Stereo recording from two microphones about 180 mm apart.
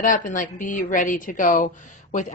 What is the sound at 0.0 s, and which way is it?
A woman's voice, 45° left (ahead or behind).